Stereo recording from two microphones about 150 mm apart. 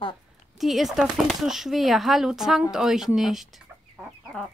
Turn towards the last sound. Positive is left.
turn(degrees=0)  # may be behind; listen again after turning